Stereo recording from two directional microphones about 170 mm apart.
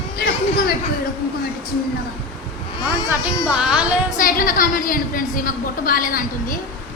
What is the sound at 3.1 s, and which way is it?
Speech, 5° right (ahead or behind).